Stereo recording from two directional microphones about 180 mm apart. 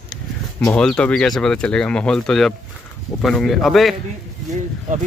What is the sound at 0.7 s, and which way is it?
Speech, 5° left (ahead or behind).